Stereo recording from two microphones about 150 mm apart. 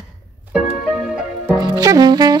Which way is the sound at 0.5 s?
5° right (ahead or behind).